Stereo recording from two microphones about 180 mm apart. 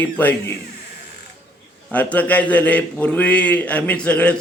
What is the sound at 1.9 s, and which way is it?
A man's voice, 10° left (ahead or behind).